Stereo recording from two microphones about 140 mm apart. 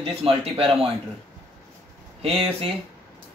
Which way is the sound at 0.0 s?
45° right (ahead or behind).